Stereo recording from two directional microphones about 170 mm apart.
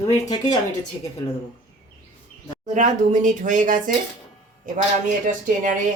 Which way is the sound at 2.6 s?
45° right (ahead or behind).